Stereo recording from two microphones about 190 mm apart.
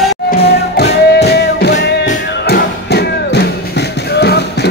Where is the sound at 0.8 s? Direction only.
60° left (ahead or behind).